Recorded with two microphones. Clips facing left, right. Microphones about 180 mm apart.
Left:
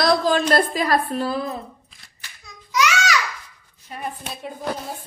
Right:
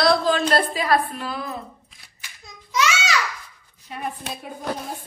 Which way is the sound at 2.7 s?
25° right (ahead or behind).